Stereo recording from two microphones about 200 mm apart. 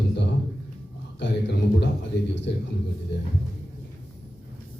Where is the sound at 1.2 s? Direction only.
60° left (ahead or behind).